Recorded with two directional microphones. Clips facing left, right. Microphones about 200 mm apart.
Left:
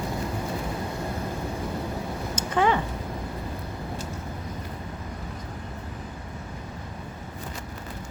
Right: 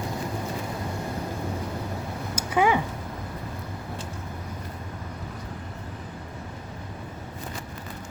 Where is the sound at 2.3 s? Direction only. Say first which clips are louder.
Right 1 dB; 10° right (ahead or behind).